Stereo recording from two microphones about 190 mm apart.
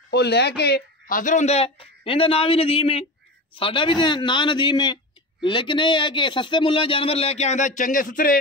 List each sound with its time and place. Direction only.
0.1 s speech: 60° left (ahead or behind)